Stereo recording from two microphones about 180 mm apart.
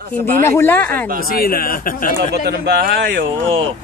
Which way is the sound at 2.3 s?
65° right (ahead or behind).